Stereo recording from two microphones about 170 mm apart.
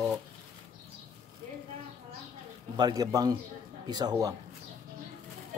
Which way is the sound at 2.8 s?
20° right (ahead or behind).